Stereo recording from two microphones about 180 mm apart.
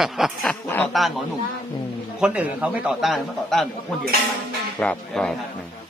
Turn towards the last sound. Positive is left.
turn(degrees=5)  # may be behind; listen again after turning